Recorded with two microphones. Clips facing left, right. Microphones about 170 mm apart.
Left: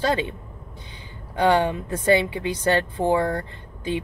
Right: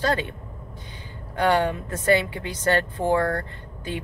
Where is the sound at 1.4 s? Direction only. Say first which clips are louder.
Left 2 dB; 20° left (ahead or behind).